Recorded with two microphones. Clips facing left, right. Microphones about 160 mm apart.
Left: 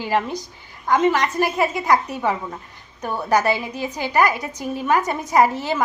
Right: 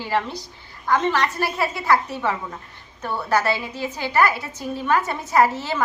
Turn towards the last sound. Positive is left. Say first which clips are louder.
# left 1 dB
turn(degrees=15)  # may be behind; listen again after turning